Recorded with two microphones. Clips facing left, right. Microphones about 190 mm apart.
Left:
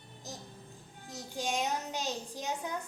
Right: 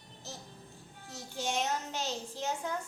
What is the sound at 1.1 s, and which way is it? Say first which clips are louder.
A child's voice: even; 15° left (ahead or behind).